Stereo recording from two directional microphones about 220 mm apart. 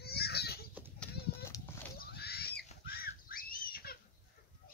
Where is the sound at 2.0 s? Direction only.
45° left (ahead or behind).